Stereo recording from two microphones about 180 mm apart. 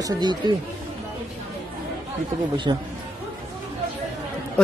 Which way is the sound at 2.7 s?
25° right (ahead or behind).